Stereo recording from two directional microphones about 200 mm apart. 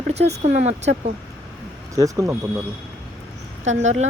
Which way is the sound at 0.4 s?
35° right (ahead or behind).